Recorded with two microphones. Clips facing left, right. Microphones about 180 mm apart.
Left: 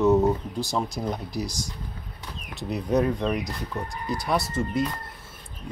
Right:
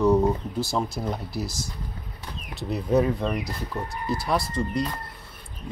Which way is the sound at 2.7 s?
Centre (ahead or behind).